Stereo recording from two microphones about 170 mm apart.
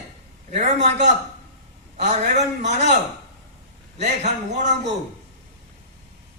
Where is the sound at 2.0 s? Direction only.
45° right (ahead or behind).